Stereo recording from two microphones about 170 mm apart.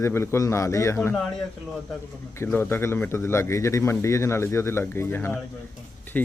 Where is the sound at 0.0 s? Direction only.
15° left (ahead or behind).